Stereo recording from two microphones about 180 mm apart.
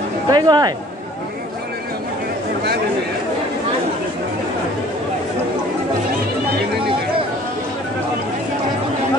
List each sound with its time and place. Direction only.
0.3 s speech: 20° right (ahead or behind)